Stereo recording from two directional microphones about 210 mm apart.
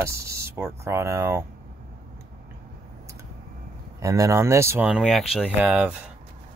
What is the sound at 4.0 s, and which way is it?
Speech, 15° right (ahead or behind).